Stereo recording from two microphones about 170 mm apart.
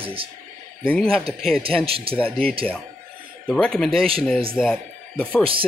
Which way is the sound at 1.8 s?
35° right (ahead or behind).